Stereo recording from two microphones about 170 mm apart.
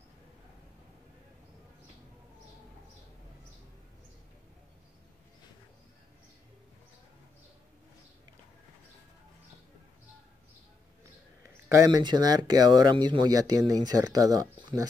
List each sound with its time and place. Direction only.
11.4 s speech: 20° right (ahead or behind)